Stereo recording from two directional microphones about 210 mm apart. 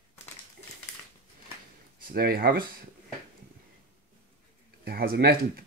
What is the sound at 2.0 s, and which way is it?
Speech, 45° right (ahead or behind).